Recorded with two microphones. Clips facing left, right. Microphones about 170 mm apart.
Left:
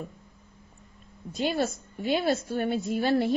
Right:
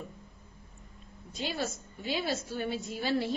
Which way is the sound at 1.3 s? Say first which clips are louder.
Left 7 dB; 50° left (ahead or behind).